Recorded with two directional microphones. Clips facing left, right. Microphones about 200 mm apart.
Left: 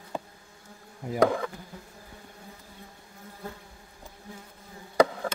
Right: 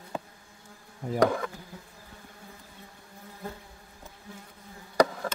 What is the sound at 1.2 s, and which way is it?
Insect, 30° left (ahead or behind).